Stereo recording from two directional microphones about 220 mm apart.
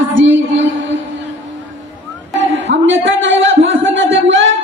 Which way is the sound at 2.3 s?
55° right (ahead or behind).